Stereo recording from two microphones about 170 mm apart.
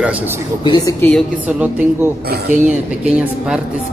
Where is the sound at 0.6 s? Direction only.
20° left (ahead or behind).